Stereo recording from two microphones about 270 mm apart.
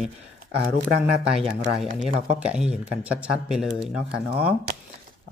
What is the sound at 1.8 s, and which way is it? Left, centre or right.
Speech, centre.